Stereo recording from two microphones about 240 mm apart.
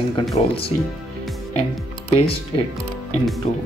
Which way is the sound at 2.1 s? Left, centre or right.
Left.